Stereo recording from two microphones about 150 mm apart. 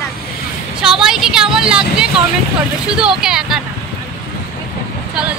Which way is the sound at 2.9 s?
5° right (ahead or behind).